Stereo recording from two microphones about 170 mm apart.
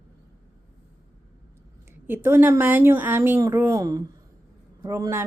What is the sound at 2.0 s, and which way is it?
A woman's voice, 10° right (ahead or behind).